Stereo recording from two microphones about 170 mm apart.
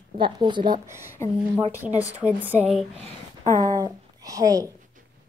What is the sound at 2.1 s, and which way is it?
Speech, 10° right (ahead or behind).